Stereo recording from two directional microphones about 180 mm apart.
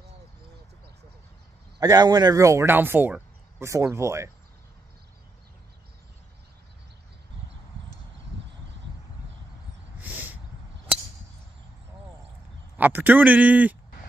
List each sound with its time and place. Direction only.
1.8 s speech: 20° right (ahead or behind)
9.9 s a sound: 10° right (ahead or behind)
12.7 s speech: 10° right (ahead or behind)